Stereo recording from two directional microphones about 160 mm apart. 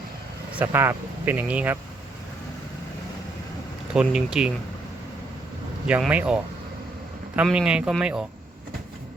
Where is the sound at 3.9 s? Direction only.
5° right (ahead or behind).